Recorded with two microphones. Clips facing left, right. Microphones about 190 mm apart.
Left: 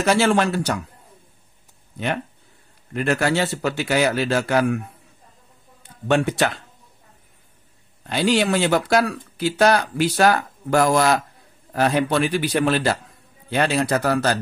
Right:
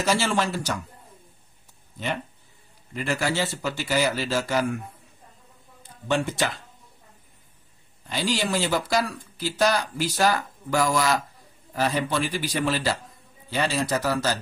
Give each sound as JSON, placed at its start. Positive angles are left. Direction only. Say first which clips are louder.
{"t": 0.0, "sound": "speech", "louder": "left 6 dB", "side_deg": 65}
{"t": 2.9, "sound": "speech", "louder": "left 6 dB", "side_deg": 60}
{"t": 5.8, "sound": "speech", "louder": "left 5 dB", "side_deg": 65}
{"t": 8.1, "sound": "speech", "louder": "left 7 dB", "side_deg": 65}